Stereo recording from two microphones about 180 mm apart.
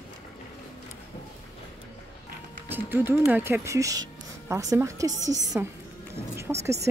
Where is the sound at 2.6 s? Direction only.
10° right (ahead or behind).